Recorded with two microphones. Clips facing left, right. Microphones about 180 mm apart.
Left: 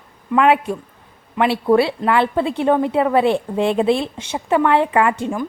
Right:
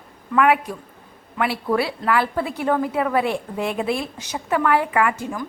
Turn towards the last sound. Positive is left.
turn(degrees=30)  # may be behind; listen again after turning